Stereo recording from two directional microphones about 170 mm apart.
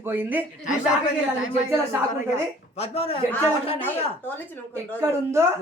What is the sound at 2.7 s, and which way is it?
Speech, 35° left (ahead or behind).